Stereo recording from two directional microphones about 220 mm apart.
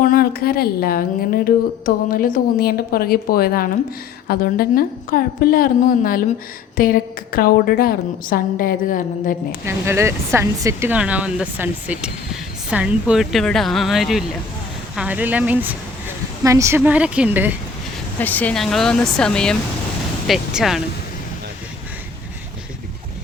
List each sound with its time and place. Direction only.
0.0 s a woman's voice: 40° left (ahead or behind)
9.6 s a woman's voice: 10° right (ahead or behind)
18.2 s speech: 5° left (ahead or behind)